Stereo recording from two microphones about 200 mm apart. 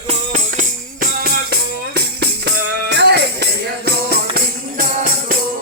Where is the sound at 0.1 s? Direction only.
40° right (ahead or behind); by 4.2 s 55° right (ahead or behind).